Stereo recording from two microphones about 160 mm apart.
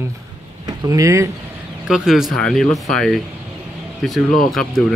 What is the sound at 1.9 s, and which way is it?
Speech, 5° right (ahead or behind).